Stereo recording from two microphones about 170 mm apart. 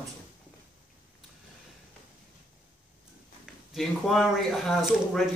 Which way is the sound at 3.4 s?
Centre (ahead or behind).